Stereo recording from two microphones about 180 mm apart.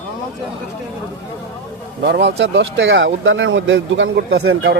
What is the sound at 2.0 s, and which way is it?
Speech, 75° right (ahead or behind).